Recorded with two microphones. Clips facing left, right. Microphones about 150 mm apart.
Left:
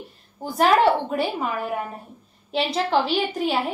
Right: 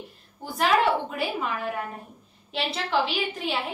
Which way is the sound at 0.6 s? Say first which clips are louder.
Left 5 dB; 40° left (ahead or behind).